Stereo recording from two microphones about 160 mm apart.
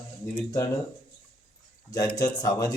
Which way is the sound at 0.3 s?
20° left (ahead or behind).